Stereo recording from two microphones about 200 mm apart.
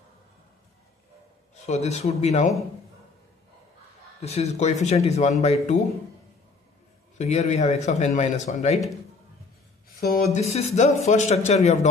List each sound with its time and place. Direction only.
1.5 s speech: 35° left (ahead or behind)
4.2 s speech: 30° left (ahead or behind)
7.2 s speech: 35° left (ahead or behind)
9.9 s speech: 45° left (ahead or behind)
10.4 s speech: 35° left (ahead or behind)